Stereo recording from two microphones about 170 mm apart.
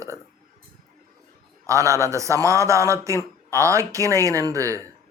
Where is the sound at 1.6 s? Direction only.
20° right (ahead or behind).